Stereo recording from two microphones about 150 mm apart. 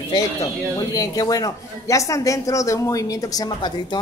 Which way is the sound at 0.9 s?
25° left (ahead or behind).